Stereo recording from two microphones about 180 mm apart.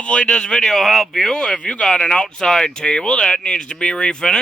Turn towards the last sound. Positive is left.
turn(degrees=5)  # may be behind; listen again after turning